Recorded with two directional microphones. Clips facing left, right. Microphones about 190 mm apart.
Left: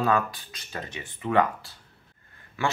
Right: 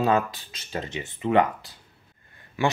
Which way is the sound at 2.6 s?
15° right (ahead or behind).